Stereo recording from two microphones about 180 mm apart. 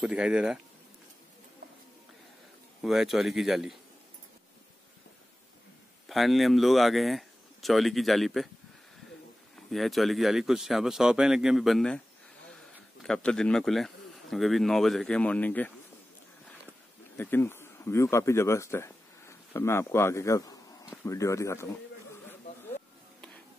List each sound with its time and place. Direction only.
0.0 s speech: 5° right (ahead or behind)
2.8 s speech: centre (ahead or behind)
6.0 s speech: centre (ahead or behind)
9.7 s speech: centre (ahead or behind)
13.0 s speech: 5° left (ahead or behind)
17.2 s speech: 10° left (ahead or behind)